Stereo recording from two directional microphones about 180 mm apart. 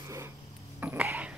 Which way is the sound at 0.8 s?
10° right (ahead or behind).